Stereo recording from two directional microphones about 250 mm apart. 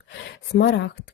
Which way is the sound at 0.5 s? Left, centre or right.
Left.